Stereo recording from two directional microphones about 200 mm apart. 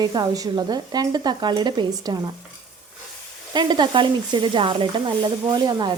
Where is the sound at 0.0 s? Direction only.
20° right (ahead or behind).